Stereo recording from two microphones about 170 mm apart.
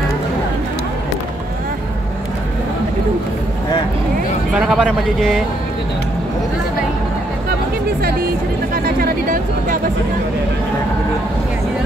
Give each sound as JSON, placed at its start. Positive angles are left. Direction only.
{"t": 4.6, "sound": "speech", "side_deg": -5}
{"t": 8.7, "sound": "speech", "side_deg": -60}